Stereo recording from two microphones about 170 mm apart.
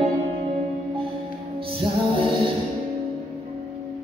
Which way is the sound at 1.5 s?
30° right (ahead or behind).